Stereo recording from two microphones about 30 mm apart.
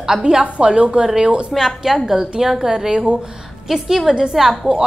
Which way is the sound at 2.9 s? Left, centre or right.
Right.